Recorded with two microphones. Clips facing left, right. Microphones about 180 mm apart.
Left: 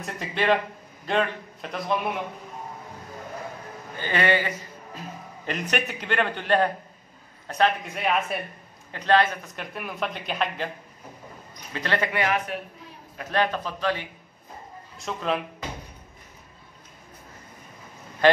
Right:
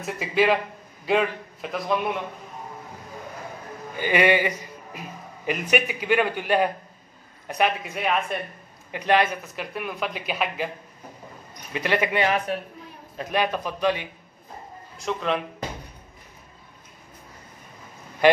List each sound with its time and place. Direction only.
0.0 s a man's voice: 5° right (ahead or behind)
3.9 s a man's voice: 10° right (ahead or behind)
7.8 s speech: centre (ahead or behind)
8.9 s a man's voice: 15° right (ahead or behind)
9.6 s speech: centre (ahead or behind)
11.7 s a man's voice: 15° right (ahead or behind)
13.2 s a man's voice: 15° right (ahead or behind)
15.0 s speech: centre (ahead or behind)
18.2 s a man's voice: 10° right (ahead or behind)